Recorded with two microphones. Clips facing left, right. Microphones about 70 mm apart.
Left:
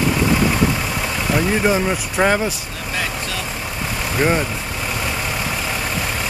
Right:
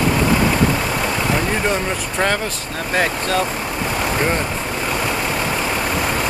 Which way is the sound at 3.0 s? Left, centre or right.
Right.